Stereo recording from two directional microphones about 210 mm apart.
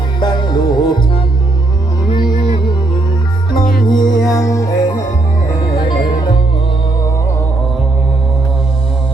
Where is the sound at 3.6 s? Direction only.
40° left (ahead or behind).